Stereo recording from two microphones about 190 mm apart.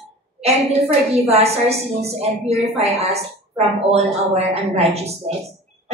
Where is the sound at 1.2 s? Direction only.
35° right (ahead or behind).